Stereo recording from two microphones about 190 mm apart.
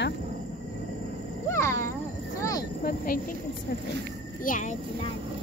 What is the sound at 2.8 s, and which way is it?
Speech, 50° left (ahead or behind).